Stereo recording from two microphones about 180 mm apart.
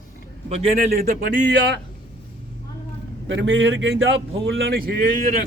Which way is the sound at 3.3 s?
90° right.